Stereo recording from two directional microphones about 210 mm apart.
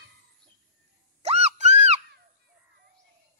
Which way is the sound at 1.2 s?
30° right (ahead or behind).